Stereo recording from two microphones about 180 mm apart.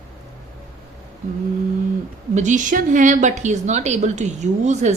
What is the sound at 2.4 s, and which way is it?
A woman's voice, 45° right (ahead or behind).